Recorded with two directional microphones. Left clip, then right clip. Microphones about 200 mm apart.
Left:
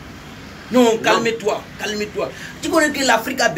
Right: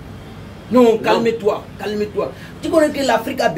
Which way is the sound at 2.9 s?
15° right (ahead or behind).